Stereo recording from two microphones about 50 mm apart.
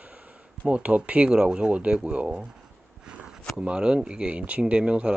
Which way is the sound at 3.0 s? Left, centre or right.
Centre.